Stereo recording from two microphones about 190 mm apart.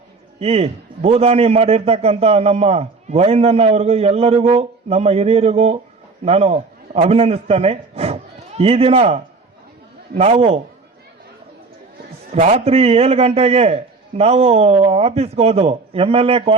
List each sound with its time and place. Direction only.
0.3 s a man's voice: 35° right (ahead or behind)
12.3 s a man's voice: 35° right (ahead or behind)